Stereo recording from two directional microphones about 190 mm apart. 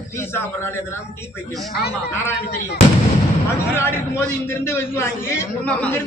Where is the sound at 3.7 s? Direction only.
15° left (ahead or behind).